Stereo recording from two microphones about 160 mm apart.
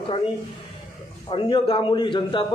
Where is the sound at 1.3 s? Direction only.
30° left (ahead or behind).